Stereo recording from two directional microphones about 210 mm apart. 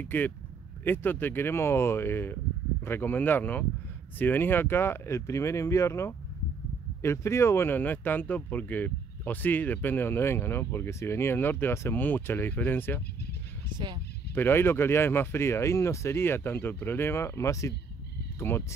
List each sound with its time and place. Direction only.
0.0 s speech: 10° left (ahead or behind)
13.7 s speech: 20° right (ahead or behind)
14.3 s speech: 10° left (ahead or behind)